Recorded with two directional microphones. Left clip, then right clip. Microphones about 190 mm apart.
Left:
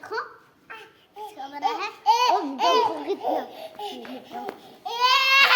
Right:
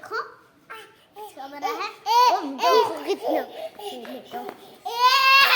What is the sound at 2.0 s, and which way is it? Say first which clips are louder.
Laughter: right 2 dB; 10° right (ahead or behind).